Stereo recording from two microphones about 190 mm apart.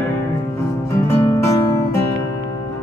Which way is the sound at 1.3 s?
15° left (ahead or behind).